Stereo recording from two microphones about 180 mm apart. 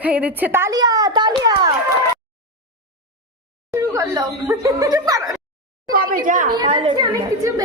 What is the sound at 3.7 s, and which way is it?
Chuckle, 15° right (ahead or behind).